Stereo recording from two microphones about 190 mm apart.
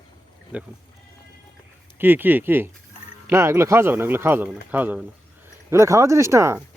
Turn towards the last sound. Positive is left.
turn(degrees=-15)  # may be behind; listen again after turning